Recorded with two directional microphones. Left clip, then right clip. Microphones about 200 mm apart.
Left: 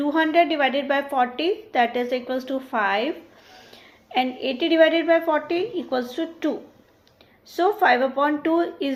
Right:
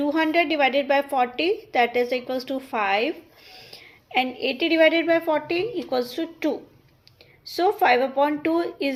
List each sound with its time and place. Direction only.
0.0 s a woman's voice: 35° right (ahead or behind)
4.1 s a woman's voice: 35° right (ahead or behind)
7.5 s a woman's voice: 35° right (ahead or behind)